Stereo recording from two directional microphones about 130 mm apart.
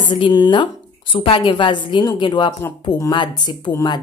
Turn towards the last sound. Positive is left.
turn(degrees=30)  # may be behind; listen again after turning